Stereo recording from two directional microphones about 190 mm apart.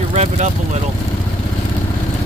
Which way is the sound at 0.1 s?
35° right (ahead or behind).